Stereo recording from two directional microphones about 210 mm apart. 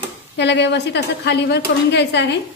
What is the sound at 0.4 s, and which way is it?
A woman's voice, 55° left (ahead or behind).